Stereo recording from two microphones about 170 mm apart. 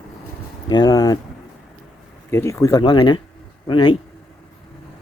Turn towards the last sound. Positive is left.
turn(degrees=25)  # may be behind; listen again after turning